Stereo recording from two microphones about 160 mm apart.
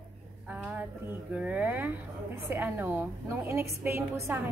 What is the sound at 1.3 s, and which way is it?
A woman's voice, 10° right (ahead or behind).